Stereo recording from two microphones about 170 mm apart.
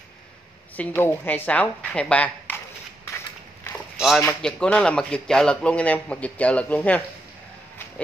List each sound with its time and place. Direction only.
0.7 s a man's voice: 10° left (ahead or behind)
4.0 s a sound: 5° right (ahead or behind)
4.4 s a man's voice: 5° left (ahead or behind)